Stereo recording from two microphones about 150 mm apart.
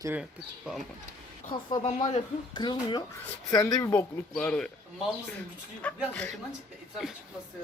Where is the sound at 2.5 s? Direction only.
30° left (ahead or behind).